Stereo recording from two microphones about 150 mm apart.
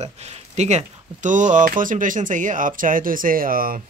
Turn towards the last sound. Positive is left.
turn(degrees=-70)  # may be behind; listen again after turning